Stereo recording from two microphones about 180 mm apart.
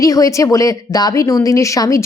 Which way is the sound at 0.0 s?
20° left (ahead or behind).